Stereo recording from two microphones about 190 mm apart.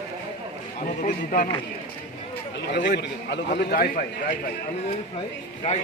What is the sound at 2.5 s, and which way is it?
A man's voice, 65° left (ahead or behind).